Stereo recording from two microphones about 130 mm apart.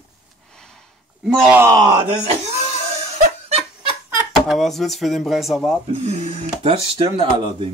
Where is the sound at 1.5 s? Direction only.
20° right (ahead or behind).